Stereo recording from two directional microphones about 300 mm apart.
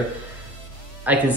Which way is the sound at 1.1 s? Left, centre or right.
Centre.